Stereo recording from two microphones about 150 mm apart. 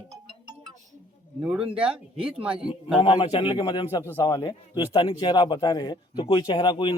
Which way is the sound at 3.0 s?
35° left (ahead or behind).